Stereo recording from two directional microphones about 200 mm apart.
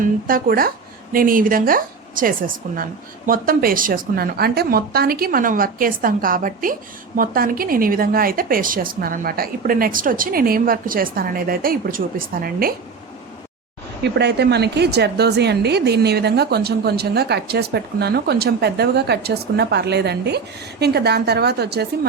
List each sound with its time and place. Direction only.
0.0 s a woman's voice: 45° right (ahead or behind)
14.0 s a woman's voice: 55° right (ahead or behind)